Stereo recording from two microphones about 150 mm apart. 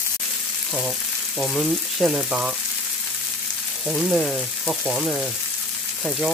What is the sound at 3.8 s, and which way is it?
Frying, 5° right (ahead or behind).